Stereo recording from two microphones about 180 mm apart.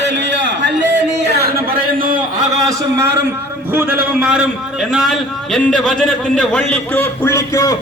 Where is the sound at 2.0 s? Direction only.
25° right (ahead or behind).